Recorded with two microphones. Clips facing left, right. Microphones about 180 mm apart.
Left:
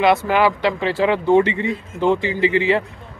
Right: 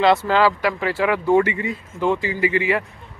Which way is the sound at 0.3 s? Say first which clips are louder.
Left 1 dB; 20° left (ahead or behind).